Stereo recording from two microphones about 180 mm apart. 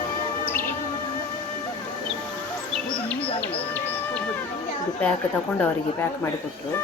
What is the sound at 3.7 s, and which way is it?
Music, 10° left (ahead or behind).